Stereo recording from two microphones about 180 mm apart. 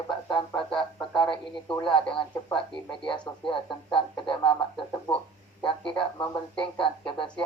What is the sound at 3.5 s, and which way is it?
Speech, 30° left (ahead or behind).